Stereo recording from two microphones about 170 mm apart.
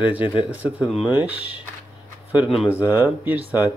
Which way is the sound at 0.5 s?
10° right (ahead or behind).